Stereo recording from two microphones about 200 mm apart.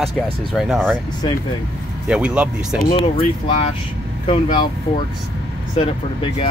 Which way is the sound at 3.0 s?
30° left (ahead or behind).